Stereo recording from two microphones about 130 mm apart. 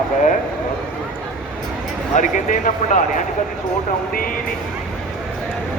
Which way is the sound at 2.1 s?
75° left (ahead or behind).